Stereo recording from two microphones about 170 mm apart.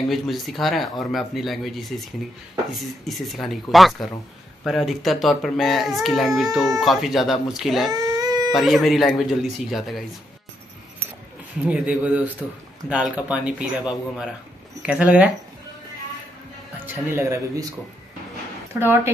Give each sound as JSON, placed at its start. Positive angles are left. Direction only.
{"t": 0.1, "sound": "a child's voice", "side_deg": 0}
{"t": 3.1, "sound": "a child's voice", "side_deg": 0}
{"t": 7.9, "sound": "baby cry", "side_deg": -25}
{"t": 8.5, "sound": "a child's voice", "side_deg": 0}
{"t": 11.6, "sound": "a child's voice", "side_deg": -5}
{"t": 16.8, "sound": "speech", "side_deg": -15}